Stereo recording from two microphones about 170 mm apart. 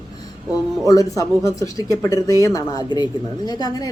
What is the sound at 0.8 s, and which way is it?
Speech, 20° left (ahead or behind).